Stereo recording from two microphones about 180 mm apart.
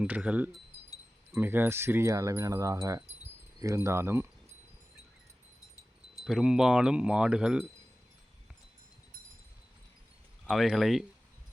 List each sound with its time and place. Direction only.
0.0 s speech: 5° right (ahead or behind)
6.2 s speech: 5° right (ahead or behind)
10.5 s speech: centre (ahead or behind)